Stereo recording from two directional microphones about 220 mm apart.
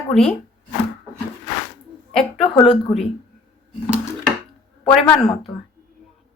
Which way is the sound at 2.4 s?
25° left (ahead or behind).